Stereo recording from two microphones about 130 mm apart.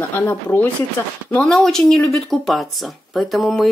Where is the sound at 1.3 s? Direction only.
5° left (ahead or behind).